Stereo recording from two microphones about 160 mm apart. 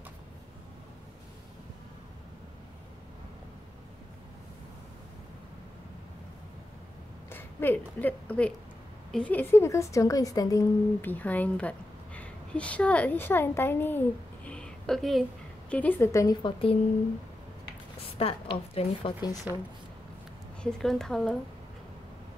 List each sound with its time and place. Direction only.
7.2 s a woman's voice: 15° left (ahead or behind)
18.1 s a woman's voice: 40° left (ahead or behind)
20.6 s a woman's voice: 5° left (ahead or behind)